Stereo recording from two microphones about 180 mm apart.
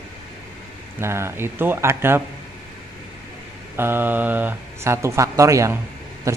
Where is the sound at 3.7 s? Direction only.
10° right (ahead or behind).